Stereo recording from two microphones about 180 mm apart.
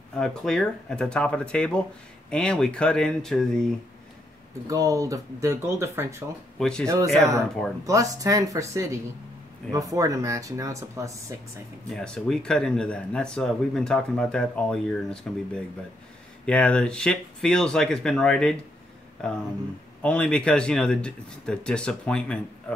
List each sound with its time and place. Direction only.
0.1 s speech: 5° left (ahead or behind)
4.6 s speech: 20° right (ahead or behind)
6.6 s speech: 5° left (ahead or behind)
7.8 s speech: 20° right (ahead or behind)
11.9 s speech: 5° left (ahead or behind)
20.0 s speech: 5° left (ahead or behind)